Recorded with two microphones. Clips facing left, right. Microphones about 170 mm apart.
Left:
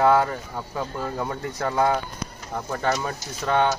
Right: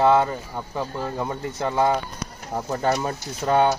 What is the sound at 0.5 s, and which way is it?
Speech, 5° right (ahead or behind).